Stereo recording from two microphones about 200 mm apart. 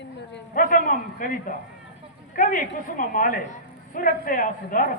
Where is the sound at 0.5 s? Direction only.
45° left (ahead or behind).